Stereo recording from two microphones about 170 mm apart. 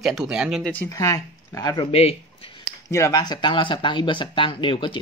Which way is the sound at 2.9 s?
15° left (ahead or behind).